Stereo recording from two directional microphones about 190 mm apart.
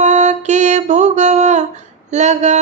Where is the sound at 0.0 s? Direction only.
40° right (ahead or behind).